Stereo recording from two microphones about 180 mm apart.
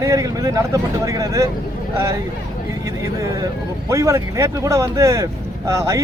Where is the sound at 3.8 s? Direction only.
15° right (ahead or behind).